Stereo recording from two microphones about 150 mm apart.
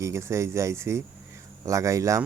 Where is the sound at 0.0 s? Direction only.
20° right (ahead or behind).